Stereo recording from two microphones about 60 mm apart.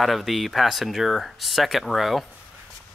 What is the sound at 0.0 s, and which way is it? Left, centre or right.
Speech, centre.